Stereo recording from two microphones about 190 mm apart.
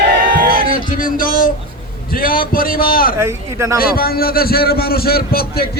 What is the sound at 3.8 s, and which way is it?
A man's voice, 50° left (ahead or behind).